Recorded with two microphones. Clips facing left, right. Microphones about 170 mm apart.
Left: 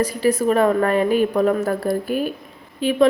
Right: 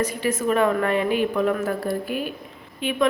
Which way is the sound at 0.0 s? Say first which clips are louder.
Left 5 dB; 35° left (ahead or behind).